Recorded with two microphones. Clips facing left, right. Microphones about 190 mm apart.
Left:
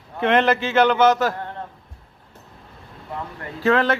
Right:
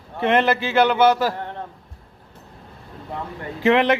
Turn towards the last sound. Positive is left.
turn(degrees=-15)  # may be behind; listen again after turning